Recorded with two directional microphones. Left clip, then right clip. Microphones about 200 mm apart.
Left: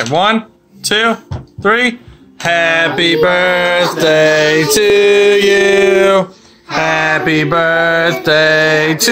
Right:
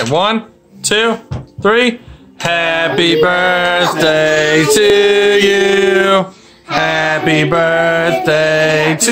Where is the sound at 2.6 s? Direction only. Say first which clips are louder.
Left 1 dB; 75° right (ahead or behind).